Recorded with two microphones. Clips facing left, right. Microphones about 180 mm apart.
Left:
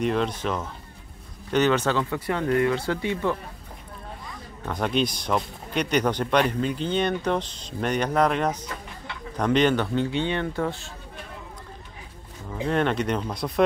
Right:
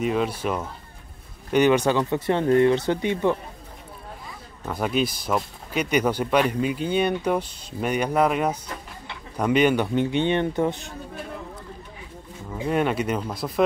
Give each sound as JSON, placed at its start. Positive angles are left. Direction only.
{"t": 0.0, "sound": "speech", "side_deg": -5}
{"t": 4.6, "sound": "speech", "side_deg": -5}
{"t": 12.6, "sound": "speech", "side_deg": -10}